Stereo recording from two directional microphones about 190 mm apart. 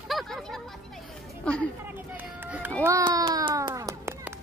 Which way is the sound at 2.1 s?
10° right (ahead or behind).